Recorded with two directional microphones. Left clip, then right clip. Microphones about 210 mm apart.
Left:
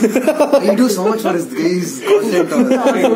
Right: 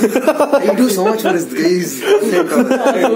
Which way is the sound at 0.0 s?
15° right (ahead or behind).